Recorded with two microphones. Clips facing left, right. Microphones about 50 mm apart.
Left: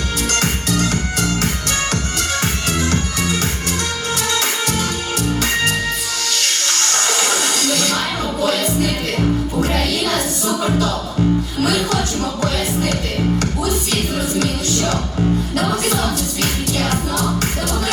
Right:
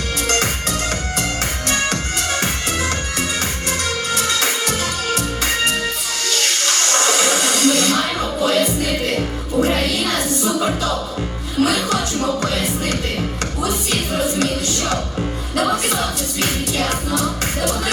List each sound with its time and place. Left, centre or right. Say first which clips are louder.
6.8 s train: right 2 dB; right
8.4 s music: right 3 dB; right
11.6 s music: right 3 dB; right
13.9 s music: even; right